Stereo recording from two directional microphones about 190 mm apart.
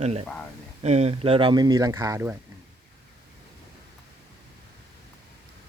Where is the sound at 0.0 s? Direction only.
35° right (ahead or behind); by 2.3 s 15° right (ahead or behind).